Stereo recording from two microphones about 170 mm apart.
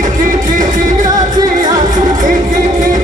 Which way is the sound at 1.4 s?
50° right (ahead or behind).